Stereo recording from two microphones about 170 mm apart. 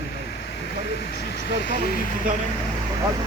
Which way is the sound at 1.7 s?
65° left (ahead or behind).